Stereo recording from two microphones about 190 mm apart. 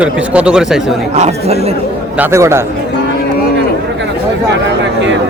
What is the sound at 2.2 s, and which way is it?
Speech, 15° right (ahead or behind).